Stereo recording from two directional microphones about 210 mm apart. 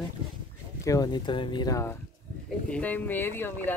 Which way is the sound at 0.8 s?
15° left (ahead or behind).